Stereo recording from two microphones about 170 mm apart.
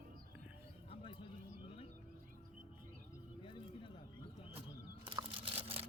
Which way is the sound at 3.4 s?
30° left (ahead or behind).